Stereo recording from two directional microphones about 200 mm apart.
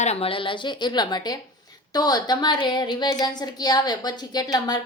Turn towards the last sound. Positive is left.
turn(degrees=20)  # may be behind; listen again after turning